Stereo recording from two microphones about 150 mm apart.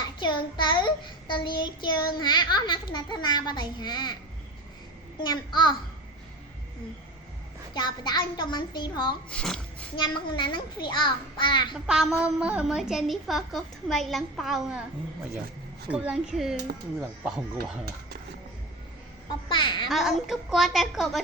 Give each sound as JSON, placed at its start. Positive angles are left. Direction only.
{"t": 0.2, "sound": "child singing", "side_deg": 30}
{"t": 5.2, "sound": "child singing", "side_deg": 30}
{"t": 7.7, "sound": "a child's voice", "side_deg": 30}
{"t": 9.3, "sound": "a woman's voice", "side_deg": 5}
{"t": 9.9, "sound": "child singing", "side_deg": 30}
{"t": 11.7, "sound": "a woman's voice", "side_deg": -5}
{"t": 15.9, "sound": "a woman's voice", "side_deg": -10}
{"t": 19.5, "sound": "a child's voice", "side_deg": 30}
{"t": 19.9, "sound": "a woman's voice", "side_deg": 0}